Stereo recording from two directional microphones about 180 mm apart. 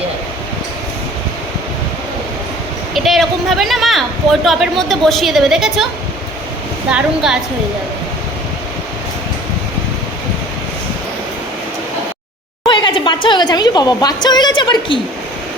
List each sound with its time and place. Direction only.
2.9 s speech: centre (ahead or behind)
6.9 s speech: 5° right (ahead or behind)
12.6 s a sound: 25° left (ahead or behind)